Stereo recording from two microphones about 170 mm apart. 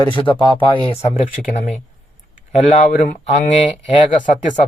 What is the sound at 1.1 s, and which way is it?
Speech, 50° left (ahead or behind).